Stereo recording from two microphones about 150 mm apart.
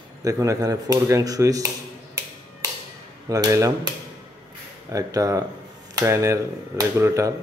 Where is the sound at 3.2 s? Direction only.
25° right (ahead or behind).